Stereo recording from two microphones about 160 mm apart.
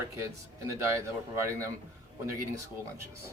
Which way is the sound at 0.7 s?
20° right (ahead or behind).